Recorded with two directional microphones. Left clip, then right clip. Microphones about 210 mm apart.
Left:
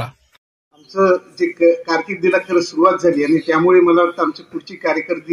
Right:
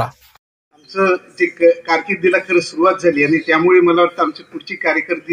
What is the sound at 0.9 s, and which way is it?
A man's voice, 65° left (ahead or behind).